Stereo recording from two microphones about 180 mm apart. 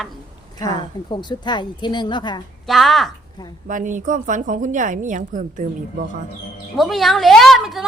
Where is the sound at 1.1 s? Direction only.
25° left (ahead or behind).